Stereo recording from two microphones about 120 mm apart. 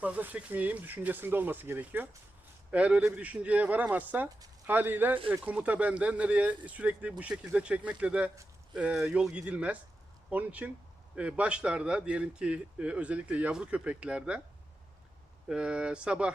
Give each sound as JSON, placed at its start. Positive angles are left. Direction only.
{"t": 0.0, "sound": "speech", "side_deg": -15}
{"t": 15.4, "sound": "speech", "side_deg": -10}